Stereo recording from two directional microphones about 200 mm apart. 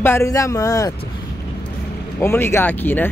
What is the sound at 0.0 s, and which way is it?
Speech, 15° left (ahead or behind).